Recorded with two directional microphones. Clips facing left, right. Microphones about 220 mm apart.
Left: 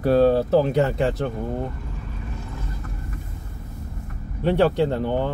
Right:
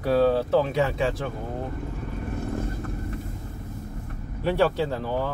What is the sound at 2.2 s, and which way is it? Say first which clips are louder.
Vehicle: right 10 dB; 55° right (ahead or behind).